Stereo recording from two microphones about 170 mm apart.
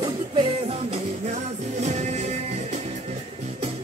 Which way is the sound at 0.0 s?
30° right (ahead or behind).